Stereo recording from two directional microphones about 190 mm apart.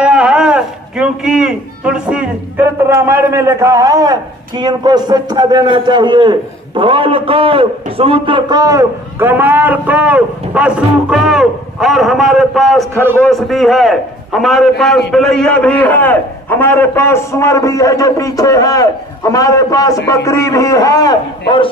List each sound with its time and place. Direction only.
0.0 s a man's voice: 5° right (ahead or behind); by 21.6 s 25° left (ahead or behind)